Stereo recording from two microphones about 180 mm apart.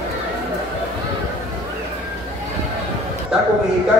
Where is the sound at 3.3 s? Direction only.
5° right (ahead or behind).